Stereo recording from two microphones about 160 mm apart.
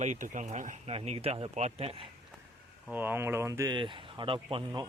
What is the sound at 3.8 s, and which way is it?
Speech, 30° right (ahead or behind).